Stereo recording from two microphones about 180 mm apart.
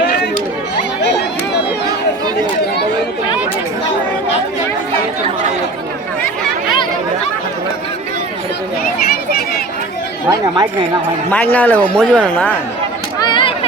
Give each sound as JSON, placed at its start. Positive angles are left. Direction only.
{"t": 10.2, "sound": "speech", "side_deg": -20}
{"t": 11.3, "sound": "a man's voice", "side_deg": 10}
{"t": 13.1, "sound": "chatter", "side_deg": 25}